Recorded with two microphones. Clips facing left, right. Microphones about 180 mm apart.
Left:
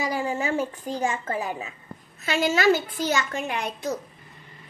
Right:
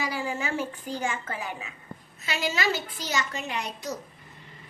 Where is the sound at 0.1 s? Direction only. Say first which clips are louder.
Left 5 dB; 35° left (ahead or behind).